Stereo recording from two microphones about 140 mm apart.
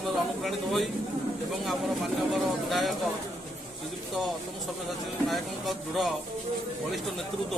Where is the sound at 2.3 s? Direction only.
Centre (ahead or behind).